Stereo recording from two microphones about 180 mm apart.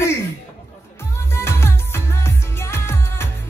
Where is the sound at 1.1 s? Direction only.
15° left (ahead or behind).